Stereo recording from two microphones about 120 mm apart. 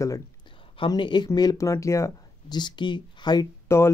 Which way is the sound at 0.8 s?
40° left (ahead or behind).